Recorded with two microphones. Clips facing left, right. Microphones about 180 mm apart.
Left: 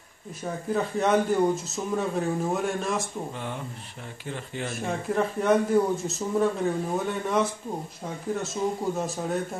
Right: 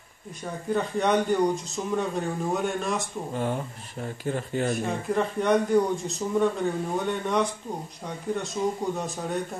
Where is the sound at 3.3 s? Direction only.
40° right (ahead or behind).